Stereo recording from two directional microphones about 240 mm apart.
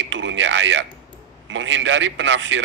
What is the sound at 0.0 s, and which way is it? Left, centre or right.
A man's voice, right.